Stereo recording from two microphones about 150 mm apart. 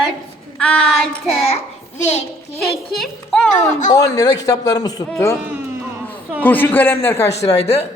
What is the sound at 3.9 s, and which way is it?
A man's voice, 25° left (ahead or behind).